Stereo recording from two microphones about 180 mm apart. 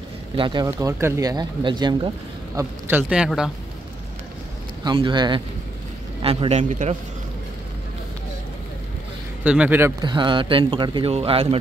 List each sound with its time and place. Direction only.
0.4 s speech: 25° right (ahead or behind)
0.7 s speech: 15° right (ahead or behind)
2.5 s a man's voice: 10° right (ahead or behind)
4.8 s speech: 25° right (ahead or behind)
9.4 s speech: 5° right (ahead or behind)
10.0 s speech: 25° right (ahead or behind)